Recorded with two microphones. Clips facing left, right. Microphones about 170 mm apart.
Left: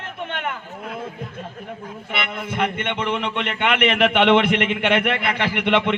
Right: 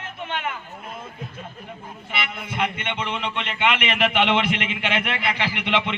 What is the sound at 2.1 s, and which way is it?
A man's voice, 55° left (ahead or behind).